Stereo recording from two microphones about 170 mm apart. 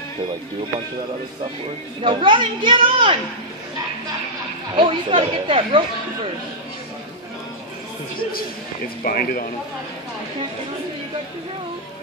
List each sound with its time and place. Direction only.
2.0 s a woman's voice: 30° right (ahead or behind)
4.7 s a woman's voice: 30° right (ahead or behind)
8.2 s speech: 60° left (ahead or behind)